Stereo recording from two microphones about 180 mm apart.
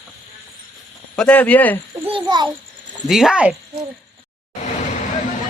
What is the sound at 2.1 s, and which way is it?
Speech, 25° right (ahead or behind).